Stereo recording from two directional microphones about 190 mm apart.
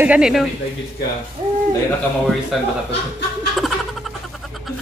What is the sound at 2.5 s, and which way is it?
Speech, centre (ahead or behind).